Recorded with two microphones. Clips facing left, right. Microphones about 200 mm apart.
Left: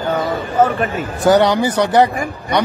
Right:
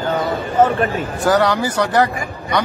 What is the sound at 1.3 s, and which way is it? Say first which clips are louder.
Speech: left 3 dB; 20° left (ahead or behind).